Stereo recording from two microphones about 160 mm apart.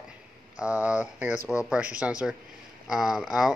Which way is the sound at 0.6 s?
5° right (ahead or behind).